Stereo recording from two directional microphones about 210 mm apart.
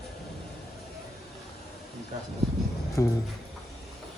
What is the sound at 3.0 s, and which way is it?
Speech, 10° left (ahead or behind).